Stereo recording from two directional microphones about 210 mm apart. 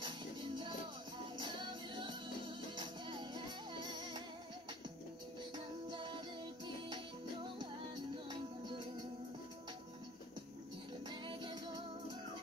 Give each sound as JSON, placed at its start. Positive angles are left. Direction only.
{"t": 0.0, "sound": "music", "side_deg": -25}
{"t": 5.5, "sound": "music", "side_deg": -20}
{"t": 11.1, "sound": "music", "side_deg": -20}